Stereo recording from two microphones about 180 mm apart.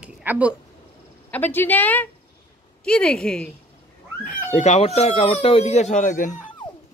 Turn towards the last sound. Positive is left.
turn(degrees=45)  # may be behind; listen again after turning